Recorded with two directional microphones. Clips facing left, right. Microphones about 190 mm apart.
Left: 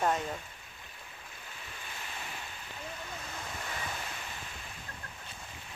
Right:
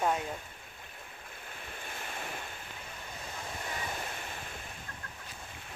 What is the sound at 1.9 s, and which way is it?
Waves, 50° right (ahead or behind).